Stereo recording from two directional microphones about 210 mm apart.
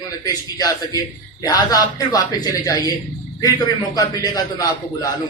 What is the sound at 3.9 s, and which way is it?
A man's voice, 15° left (ahead or behind).